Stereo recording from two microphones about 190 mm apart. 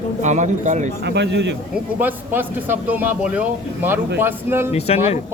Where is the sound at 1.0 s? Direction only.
65° right (ahead or behind).